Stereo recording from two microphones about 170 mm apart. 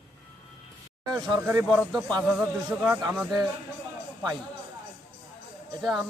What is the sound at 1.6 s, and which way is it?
Speech, 5° left (ahead or behind).